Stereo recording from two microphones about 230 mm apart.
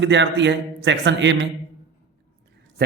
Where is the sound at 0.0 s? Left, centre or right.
Right.